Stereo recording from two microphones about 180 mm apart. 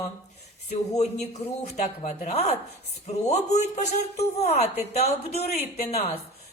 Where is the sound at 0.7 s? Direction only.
35° left (ahead or behind).